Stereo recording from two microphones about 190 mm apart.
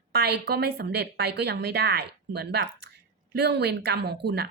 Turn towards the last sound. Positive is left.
turn(degrees=-60)  # may be behind; listen again after turning